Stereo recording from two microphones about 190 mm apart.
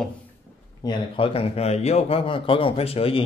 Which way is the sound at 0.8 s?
30° left (ahead or behind).